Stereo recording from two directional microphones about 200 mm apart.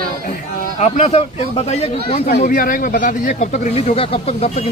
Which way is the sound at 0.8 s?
35° left (ahead or behind).